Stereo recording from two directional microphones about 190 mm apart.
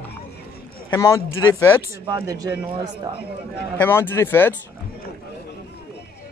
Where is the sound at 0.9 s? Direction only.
15° left (ahead or behind).